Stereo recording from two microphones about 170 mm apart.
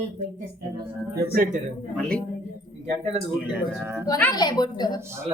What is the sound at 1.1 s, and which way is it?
Speech, 65° right (ahead or behind).